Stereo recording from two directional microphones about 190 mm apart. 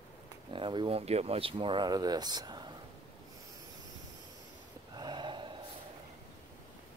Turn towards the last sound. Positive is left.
turn(degrees=-25)  # may be behind; listen again after turning